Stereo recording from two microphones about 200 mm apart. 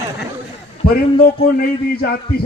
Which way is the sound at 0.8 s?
45° left (ahead or behind).